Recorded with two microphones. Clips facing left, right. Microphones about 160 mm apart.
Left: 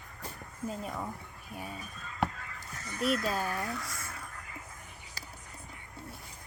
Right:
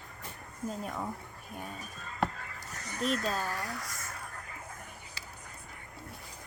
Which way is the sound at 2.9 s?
10° left (ahead or behind).